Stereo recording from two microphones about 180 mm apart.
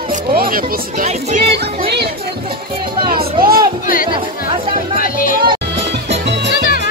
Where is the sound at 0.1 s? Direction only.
55° right (ahead or behind).